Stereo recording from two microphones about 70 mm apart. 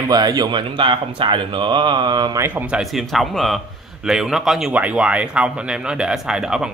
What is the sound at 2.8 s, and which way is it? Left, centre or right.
Speech, centre.